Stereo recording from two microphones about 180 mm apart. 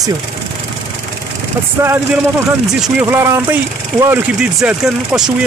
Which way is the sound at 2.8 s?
10° right (ahead or behind).